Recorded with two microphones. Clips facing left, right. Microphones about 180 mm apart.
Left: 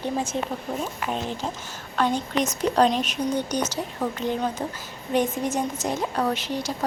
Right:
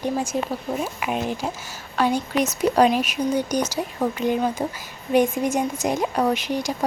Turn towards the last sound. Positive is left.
turn(degrees=-15)  # may be behind; listen again after turning